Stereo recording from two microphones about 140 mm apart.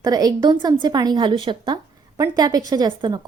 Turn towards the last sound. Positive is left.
turn(degrees=-30)  # may be behind; listen again after turning